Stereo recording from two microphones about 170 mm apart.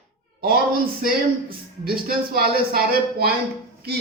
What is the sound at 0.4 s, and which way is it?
Speech, 60° right (ahead or behind).